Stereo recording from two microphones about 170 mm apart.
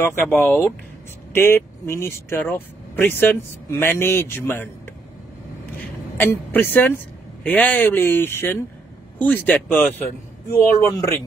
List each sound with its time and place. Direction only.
0.4 s speech: 10° left (ahead or behind)
6.1 s speech: 10° left (ahead or behind)